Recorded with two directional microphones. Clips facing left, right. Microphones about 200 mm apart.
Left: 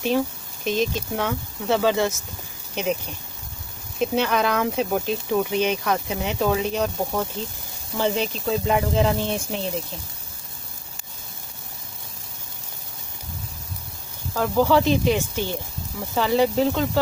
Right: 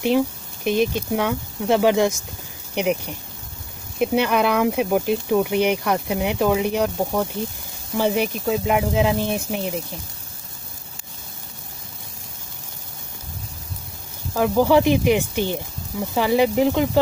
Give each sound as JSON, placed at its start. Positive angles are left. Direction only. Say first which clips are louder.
{"t": 0.7, "sound": "speech", "louder": "right 4 dB", "side_deg": -15}
{"t": 14.3, "sound": "speech", "louder": "right 3 dB", "side_deg": -15}